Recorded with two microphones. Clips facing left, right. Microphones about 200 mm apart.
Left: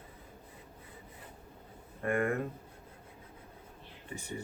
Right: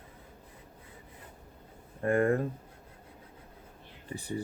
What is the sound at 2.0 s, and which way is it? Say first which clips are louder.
Speech: right 5 dB; 35° right (ahead or behind).